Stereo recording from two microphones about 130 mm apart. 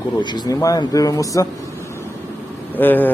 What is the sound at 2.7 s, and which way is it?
Speech, 15° left (ahead or behind).